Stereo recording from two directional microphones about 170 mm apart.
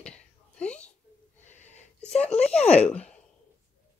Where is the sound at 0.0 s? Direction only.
5° left (ahead or behind).